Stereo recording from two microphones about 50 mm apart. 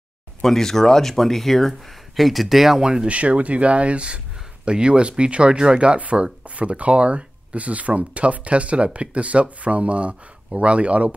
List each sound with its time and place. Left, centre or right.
0.4 s speech: centre; by 11.1 s right